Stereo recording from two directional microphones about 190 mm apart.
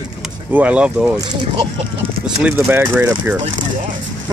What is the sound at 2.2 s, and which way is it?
Speech, 5° right (ahead or behind).